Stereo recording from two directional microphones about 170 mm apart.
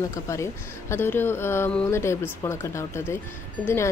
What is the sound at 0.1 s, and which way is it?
Speech, 15° left (ahead or behind).